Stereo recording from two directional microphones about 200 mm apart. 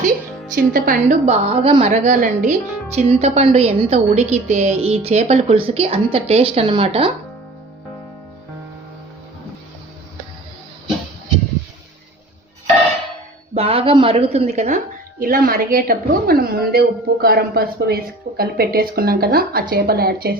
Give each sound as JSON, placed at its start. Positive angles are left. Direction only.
{"t": 0.5, "sound": "a woman's voice", "side_deg": -45}
{"t": 13.5, "sound": "a woman's voice", "side_deg": -30}
{"t": 15.2, "sound": "a woman's voice", "side_deg": -45}